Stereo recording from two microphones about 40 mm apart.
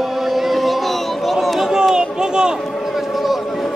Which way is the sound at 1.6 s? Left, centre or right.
Centre.